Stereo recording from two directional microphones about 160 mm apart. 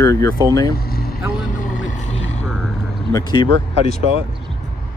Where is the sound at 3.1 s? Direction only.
25° left (ahead or behind).